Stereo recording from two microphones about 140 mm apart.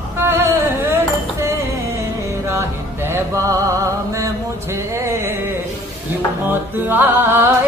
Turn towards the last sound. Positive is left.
turn(degrees=-15)  # may be behind; listen again after turning